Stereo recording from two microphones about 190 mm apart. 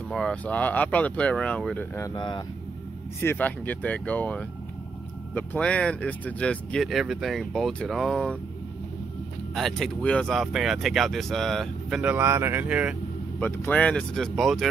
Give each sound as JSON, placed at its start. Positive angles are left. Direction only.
{"t": 0.1, "sound": "speech", "side_deg": 5}
{"t": 2.0, "sound": "speech", "side_deg": 20}
{"t": 3.2, "sound": "speech", "side_deg": 10}
{"t": 9.6, "sound": "speech", "side_deg": 0}
{"t": 13.4, "sound": "speech", "side_deg": 10}